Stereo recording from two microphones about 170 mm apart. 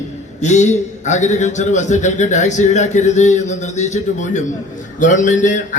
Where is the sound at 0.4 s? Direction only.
45° left (ahead or behind).